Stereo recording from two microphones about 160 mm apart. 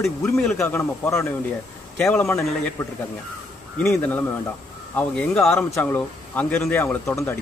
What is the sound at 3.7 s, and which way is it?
Speech, 5° left (ahead or behind).